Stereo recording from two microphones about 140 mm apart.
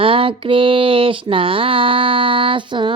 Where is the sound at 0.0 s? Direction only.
40° right (ahead or behind).